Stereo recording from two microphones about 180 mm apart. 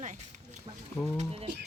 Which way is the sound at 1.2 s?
30° right (ahead or behind).